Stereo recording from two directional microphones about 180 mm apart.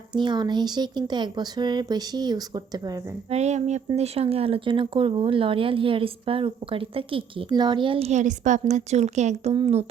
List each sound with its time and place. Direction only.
0.2 s speech: 25° right (ahead or behind)
3.2 s speech: 40° right (ahead or behind)